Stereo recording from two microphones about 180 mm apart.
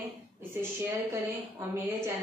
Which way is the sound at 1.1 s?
15° right (ahead or behind).